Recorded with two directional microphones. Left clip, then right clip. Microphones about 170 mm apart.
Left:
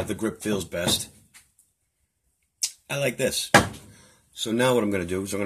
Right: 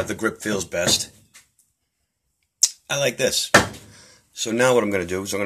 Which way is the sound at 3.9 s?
25° left (ahead or behind).